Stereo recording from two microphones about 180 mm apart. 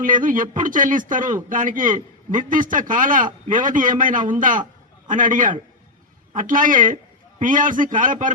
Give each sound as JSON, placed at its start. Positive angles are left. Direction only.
{"t": 0.0, "sound": "a man's voice", "side_deg": -50}